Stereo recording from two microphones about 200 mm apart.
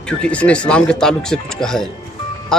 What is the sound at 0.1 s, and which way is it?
Speech, 5° left (ahead or behind).